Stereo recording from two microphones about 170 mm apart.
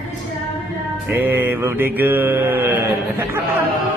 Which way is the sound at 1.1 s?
15° right (ahead or behind).